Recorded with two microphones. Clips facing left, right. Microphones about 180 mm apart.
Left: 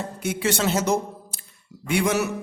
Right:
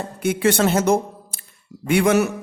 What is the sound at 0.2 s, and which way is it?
A man's voice, 55° right (ahead or behind).